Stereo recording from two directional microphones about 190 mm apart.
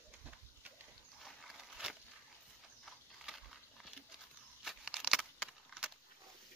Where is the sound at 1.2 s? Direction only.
Centre (ahead or behind).